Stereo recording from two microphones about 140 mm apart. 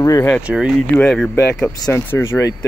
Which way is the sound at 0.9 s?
10° left (ahead or behind).